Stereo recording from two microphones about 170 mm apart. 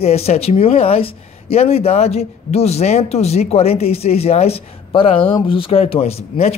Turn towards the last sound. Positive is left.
turn(degrees=35)  # may be behind; listen again after turning